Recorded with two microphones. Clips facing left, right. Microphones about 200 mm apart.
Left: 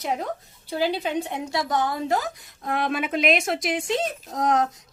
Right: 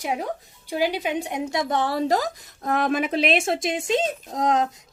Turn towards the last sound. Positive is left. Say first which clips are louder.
# even
turn(degrees=-20)  # may be behind; listen again after turning